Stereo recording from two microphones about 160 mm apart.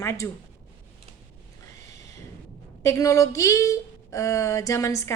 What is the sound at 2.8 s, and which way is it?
Speech, 20° left (ahead or behind).